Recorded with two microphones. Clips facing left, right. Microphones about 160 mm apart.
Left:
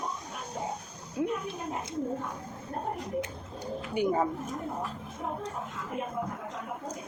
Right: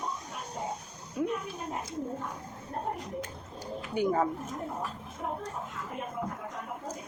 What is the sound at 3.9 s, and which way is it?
Speech, 25° left (ahead or behind).